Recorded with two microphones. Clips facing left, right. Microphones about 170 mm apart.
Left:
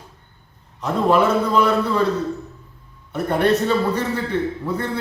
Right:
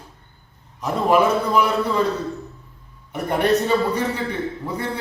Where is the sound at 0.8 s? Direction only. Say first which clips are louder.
Left 1 dB; 10° right (ahead or behind).